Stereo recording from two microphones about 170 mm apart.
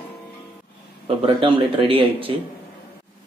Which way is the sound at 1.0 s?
30° right (ahead or behind).